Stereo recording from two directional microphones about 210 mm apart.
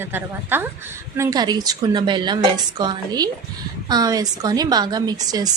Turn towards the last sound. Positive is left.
turn(degrees=-20)  # may be behind; listen again after turning